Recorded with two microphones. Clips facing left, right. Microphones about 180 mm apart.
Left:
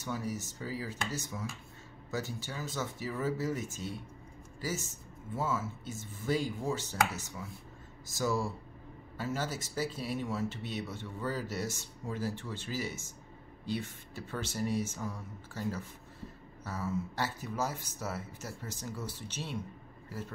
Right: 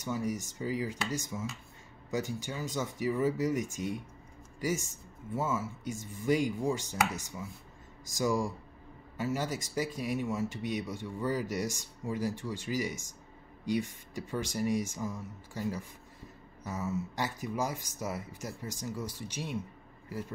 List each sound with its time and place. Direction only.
0.0 s a man's voice: 15° right (ahead or behind)